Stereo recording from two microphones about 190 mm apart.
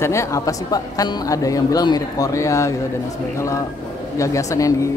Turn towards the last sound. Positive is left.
turn(degrees=15)  # may be behind; listen again after turning